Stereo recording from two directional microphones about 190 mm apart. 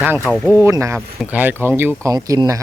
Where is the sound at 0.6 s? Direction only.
15° right (ahead or behind).